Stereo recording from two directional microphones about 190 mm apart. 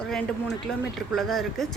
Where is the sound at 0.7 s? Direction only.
5° left (ahead or behind).